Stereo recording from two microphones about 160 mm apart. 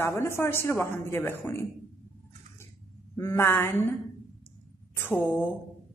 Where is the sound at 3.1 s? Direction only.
15° left (ahead or behind).